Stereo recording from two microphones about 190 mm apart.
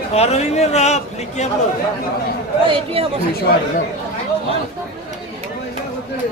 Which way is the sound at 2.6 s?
30° right (ahead or behind).